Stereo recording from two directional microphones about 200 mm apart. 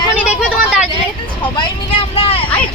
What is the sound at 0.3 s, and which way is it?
Vehicle, 5° right (ahead or behind).